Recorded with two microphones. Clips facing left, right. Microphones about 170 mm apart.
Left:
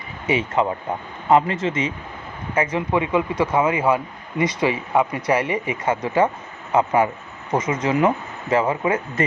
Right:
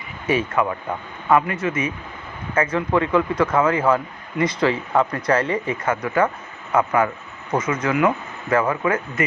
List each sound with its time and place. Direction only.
0.3 s speech: 20° left (ahead or behind)